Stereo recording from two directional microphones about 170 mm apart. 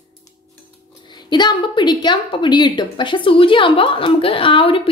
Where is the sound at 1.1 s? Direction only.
25° left (ahead or behind).